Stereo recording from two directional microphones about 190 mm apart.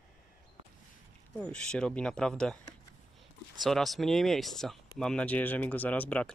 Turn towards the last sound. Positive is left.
turn(degrees=5)  # may be behind; listen again after turning